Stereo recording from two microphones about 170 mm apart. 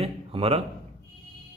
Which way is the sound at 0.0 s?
35° right (ahead or behind).